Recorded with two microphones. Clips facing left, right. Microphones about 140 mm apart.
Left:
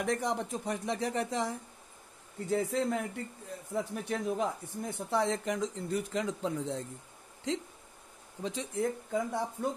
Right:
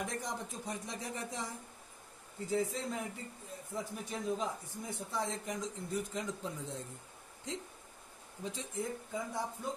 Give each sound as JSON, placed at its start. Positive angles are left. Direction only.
{"t": 0.0, "sound": "speech", "side_deg": 70}
{"t": 2.5, "sound": "speech", "side_deg": 60}
{"t": 8.4, "sound": "speech", "side_deg": 75}